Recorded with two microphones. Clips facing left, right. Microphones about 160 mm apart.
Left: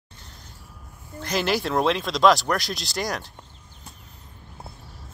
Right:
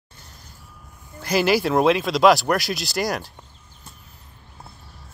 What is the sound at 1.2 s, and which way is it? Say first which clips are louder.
Speech: right 5 dB; 5° right (ahead or behind).